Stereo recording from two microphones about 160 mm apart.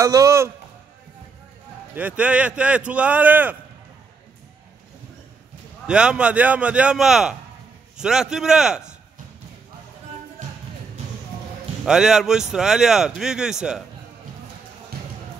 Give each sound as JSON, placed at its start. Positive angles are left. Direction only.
{"t": 0.0, "sound": "speech", "side_deg": -20}
{"t": 2.0, "sound": "speech", "side_deg": -10}
{"t": 5.9, "sound": "speech", "side_deg": -5}
{"t": 11.8, "sound": "speech", "side_deg": -5}